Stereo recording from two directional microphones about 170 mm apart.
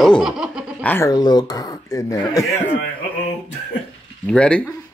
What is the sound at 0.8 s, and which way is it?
Speech, 10° left (ahead or behind).